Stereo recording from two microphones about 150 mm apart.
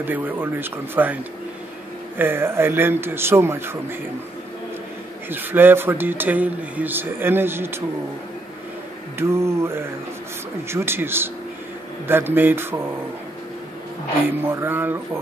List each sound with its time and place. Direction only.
0.0 s a man's voice: 15° right (ahead or behind)
5.3 s a man's voice: 15° right (ahead or behind)
9.3 s a man's voice: 20° right (ahead or behind)
14.4 s a man's voice: 15° right (ahead or behind)